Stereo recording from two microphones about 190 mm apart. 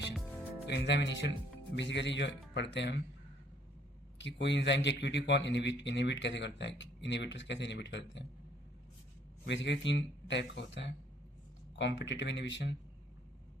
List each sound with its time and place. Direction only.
0.7 s a man's voice: 70° left (ahead or behind)
4.2 s a man's voice: 70° left (ahead or behind)
9.5 s a man's voice: 70° left (ahead or behind)